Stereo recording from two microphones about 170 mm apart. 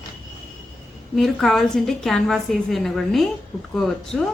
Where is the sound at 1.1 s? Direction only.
Centre (ahead or behind).